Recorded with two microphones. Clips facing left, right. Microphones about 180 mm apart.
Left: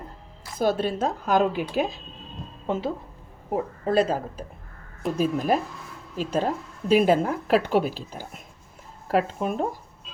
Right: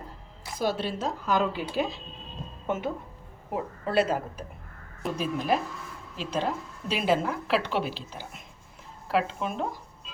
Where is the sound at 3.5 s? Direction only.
35° left (ahead or behind).